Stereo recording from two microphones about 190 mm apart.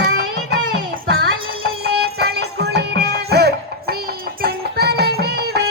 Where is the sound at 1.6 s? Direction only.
55° right (ahead or behind).